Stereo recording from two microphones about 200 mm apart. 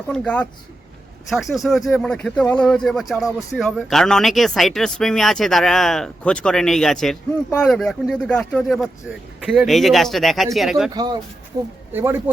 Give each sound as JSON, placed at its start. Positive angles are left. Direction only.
{"t": 0.1, "sound": "speech", "side_deg": 5}
{"t": 10.9, "sound": "speech", "side_deg": -20}